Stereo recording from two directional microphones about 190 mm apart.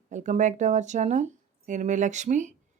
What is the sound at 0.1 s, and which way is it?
Speech, 40° right (ahead or behind).